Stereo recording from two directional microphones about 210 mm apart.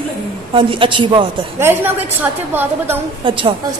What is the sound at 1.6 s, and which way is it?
A woman's voice, 10° right (ahead or behind).